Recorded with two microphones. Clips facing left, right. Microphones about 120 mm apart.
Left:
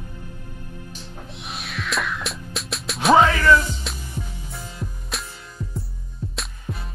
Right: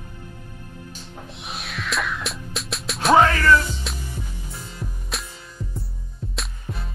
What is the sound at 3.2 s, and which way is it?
Music, 15° left (ahead or behind).